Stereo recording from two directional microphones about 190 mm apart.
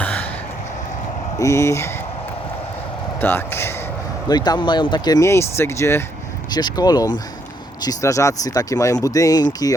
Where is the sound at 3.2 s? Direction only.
10° left (ahead or behind).